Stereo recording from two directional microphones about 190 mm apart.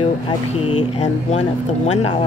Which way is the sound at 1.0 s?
35° left (ahead or behind).